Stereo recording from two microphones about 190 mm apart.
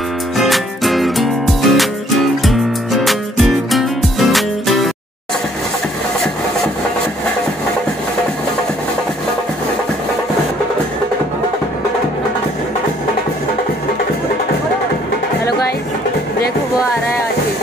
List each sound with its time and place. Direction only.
0.4 s music: centre (ahead or behind)